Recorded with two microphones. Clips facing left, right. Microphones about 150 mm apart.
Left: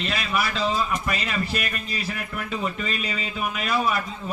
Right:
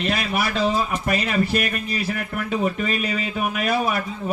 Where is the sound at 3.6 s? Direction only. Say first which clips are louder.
Right 2 dB; 55° right (ahead or behind).